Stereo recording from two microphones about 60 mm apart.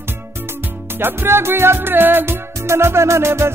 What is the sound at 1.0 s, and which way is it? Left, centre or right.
Music, right.